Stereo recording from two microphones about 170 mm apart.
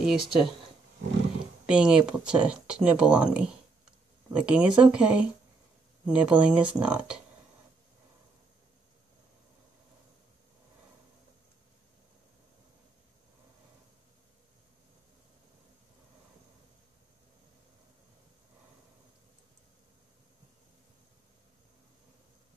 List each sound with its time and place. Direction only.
0.0 s speech: 5° right (ahead or behind)
1.7 s speech: 5° right (ahead or behind)